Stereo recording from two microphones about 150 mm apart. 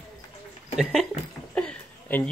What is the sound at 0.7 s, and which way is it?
Speech, 5° right (ahead or behind).